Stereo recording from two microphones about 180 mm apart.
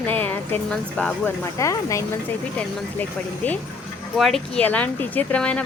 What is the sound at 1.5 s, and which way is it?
Speech, 15° left (ahead or behind).